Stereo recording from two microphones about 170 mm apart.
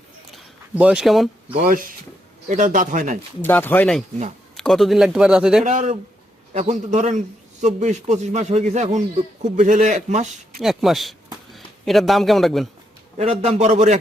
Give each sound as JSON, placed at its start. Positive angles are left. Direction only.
{"t": 0.3, "sound": "a sound", "side_deg": -5}
{"t": 2.5, "sound": "a man's voice", "side_deg": -50}
{"t": 3.4, "sound": "speech", "side_deg": 10}
{"t": 5.6, "sound": "a man's voice", "side_deg": -45}
{"t": 10.6, "sound": "speech", "side_deg": 0}
{"t": 13.1, "sound": "a man's voice", "side_deg": -40}